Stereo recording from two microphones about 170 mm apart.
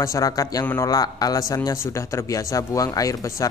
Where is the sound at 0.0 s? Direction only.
20° left (ahead or behind).